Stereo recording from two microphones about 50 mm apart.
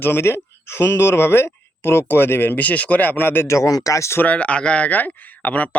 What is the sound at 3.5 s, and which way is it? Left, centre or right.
Speech, left.